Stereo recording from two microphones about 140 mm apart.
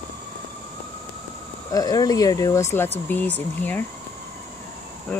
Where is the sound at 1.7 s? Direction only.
25° left (ahead or behind).